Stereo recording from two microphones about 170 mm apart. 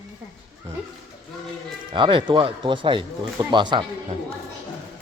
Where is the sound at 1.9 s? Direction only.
30° right (ahead or behind).